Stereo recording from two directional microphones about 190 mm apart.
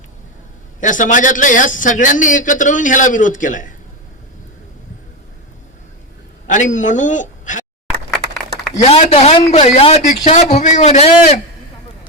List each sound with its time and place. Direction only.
0.8 s a man's voice: 40° left (ahead or behind)
6.5 s a man's voice: 40° left (ahead or behind)
8.9 s a man's voice: 35° left (ahead or behind)